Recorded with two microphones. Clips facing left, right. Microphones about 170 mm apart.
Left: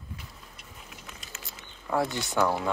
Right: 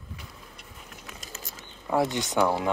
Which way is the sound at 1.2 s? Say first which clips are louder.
Right 3 dB; 40° right (ahead or behind).